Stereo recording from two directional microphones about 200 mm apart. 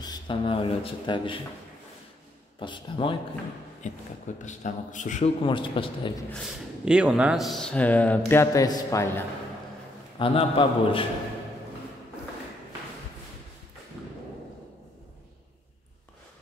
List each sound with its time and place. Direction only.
0.0 s speech: 20° left (ahead or behind)
2.6 s a man's voice: 25° left (ahead or behind)
3.8 s a man's voice: 40° left (ahead or behind)
5.4 s a man's voice: 25° left (ahead or behind)
6.3 s speech: 5° right (ahead or behind); by 9.2 s 15° left (ahead or behind)
10.1 s a man's voice: 25° left (ahead or behind)